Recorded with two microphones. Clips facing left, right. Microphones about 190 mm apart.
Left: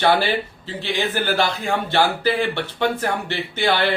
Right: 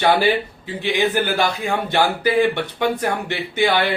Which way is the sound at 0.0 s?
15° right (ahead or behind).